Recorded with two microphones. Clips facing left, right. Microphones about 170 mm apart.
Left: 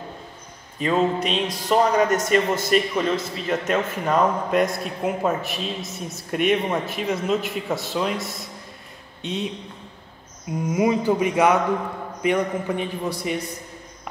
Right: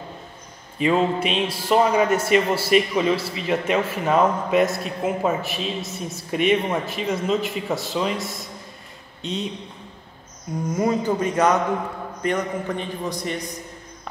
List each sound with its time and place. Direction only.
0.8 s a man's voice: 5° right (ahead or behind)
10.7 s a man's voice: 10° left (ahead or behind)